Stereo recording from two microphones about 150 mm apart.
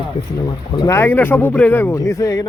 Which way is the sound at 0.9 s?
15° left (ahead or behind).